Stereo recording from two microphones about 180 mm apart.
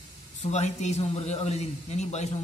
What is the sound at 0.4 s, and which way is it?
A man's voice, 40° left (ahead or behind).